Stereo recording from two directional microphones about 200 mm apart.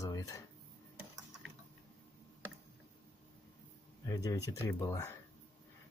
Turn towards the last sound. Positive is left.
turn(degrees=15)  # may be behind; listen again after turning